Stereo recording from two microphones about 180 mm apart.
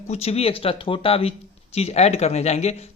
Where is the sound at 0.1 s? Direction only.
35° left (ahead or behind).